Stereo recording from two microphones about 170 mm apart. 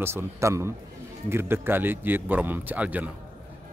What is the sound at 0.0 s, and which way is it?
A man's voice, 15° right (ahead or behind).